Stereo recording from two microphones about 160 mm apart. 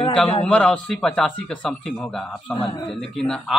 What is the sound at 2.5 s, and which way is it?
Speech, 30° left (ahead or behind).